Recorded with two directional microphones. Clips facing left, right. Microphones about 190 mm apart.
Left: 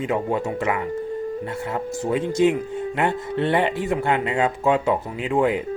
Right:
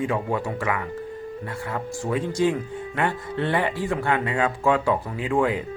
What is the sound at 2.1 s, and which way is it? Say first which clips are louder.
Speech: left 3 dB; 20° left (ahead or behind).